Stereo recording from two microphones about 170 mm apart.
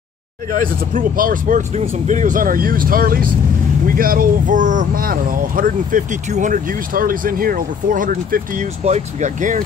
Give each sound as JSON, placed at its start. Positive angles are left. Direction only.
{"t": 0.5, "sound": "speech", "side_deg": -55}